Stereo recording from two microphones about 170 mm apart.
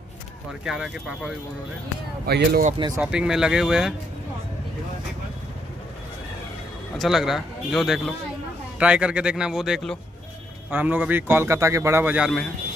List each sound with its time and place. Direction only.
0.5 s speech: centre (ahead or behind)
2.2 s speech: 65° right (ahead or behind)
3.0 s speech: 5° right (ahead or behind)
7.0 s a man's voice: centre (ahead or behind)